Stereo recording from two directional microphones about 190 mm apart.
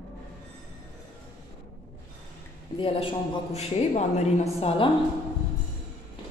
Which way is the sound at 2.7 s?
30° left (ahead or behind).